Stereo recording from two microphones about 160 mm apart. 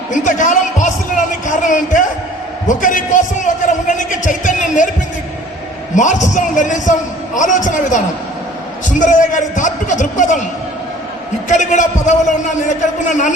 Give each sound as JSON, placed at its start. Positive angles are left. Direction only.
{"t": 0.1, "sound": "a man's voice", "side_deg": 50}
{"t": 6.0, "sound": "a man's voice", "side_deg": 50}
{"t": 11.4, "sound": "a man's voice", "side_deg": 50}